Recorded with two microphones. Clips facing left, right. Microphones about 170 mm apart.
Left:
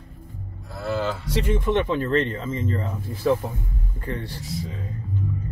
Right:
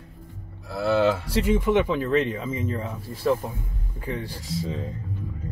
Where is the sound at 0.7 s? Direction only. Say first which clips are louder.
Right 5 dB; 85° right.